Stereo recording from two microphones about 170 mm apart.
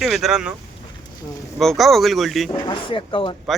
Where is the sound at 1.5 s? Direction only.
Centre (ahead or behind).